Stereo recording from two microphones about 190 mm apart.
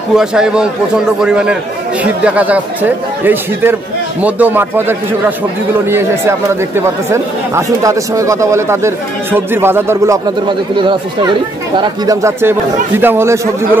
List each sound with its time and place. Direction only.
0.1 s a man's voice: 5° right (ahead or behind)
10.8 s speech: 25° right (ahead or behind)